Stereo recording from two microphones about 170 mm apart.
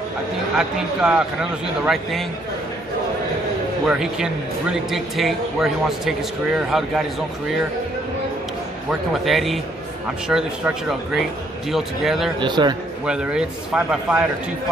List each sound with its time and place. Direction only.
0.6 s speech: 5° right (ahead or behind)
3.8 s speech: 5° right (ahead or behind)
9.1 s speech: centre (ahead or behind)
12.4 s a man's voice: 25° right (ahead or behind)
13.0 s speech: 5° right (ahead or behind)